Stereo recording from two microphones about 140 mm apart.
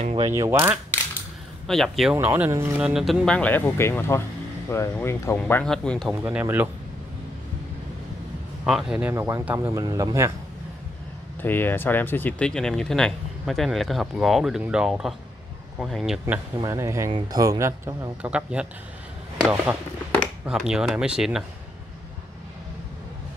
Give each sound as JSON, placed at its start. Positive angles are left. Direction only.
{"t": 0.2, "sound": "speech", "side_deg": -20}
{"t": 1.7, "sound": "speech", "side_deg": 0}
{"t": 2.1, "sound": "speech", "side_deg": -15}
{"t": 2.8, "sound": "speech", "side_deg": -5}
{"t": 5.5, "sound": "speech", "side_deg": 10}
{"t": 6.2, "sound": "speech", "side_deg": -15}
{"t": 8.6, "sound": "speech", "side_deg": -5}
{"t": 9.1, "sound": "speech", "side_deg": -20}
{"t": 11.4, "sound": "speech", "side_deg": 15}
{"t": 16.7, "sound": "speech", "side_deg": -20}
{"t": 18.3, "sound": "speech", "side_deg": -5}
{"t": 20.4, "sound": "speech", "side_deg": -5}